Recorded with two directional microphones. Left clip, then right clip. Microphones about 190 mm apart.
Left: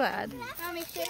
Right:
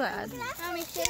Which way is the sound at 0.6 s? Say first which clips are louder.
Even; centre (ahead or behind).